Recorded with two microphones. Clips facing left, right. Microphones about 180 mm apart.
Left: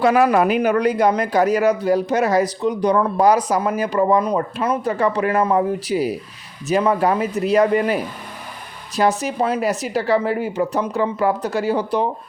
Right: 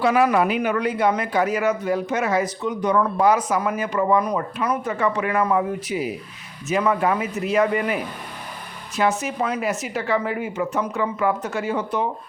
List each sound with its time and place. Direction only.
0.0 s speech: 40° left (ahead or behind)